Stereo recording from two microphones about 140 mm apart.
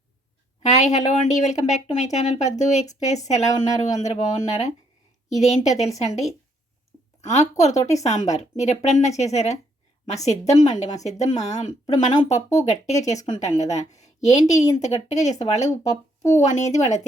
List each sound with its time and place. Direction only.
0.6 s a woman's voice: 55° left (ahead or behind)
7.2 s a woman's voice: 55° left (ahead or behind)